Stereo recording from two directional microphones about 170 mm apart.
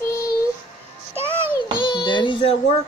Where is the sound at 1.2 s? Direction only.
15° right (ahead or behind).